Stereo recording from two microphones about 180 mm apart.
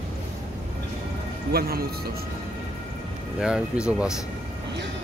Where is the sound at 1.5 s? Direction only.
60° right (ahead or behind).